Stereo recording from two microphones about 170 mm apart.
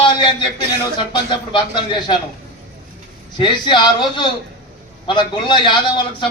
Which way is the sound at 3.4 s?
25° left (ahead or behind).